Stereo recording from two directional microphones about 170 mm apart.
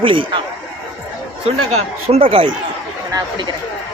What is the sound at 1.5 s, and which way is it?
Speech, 35° right (ahead or behind).